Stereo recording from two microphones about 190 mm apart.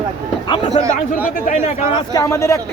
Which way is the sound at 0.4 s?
25° left (ahead or behind).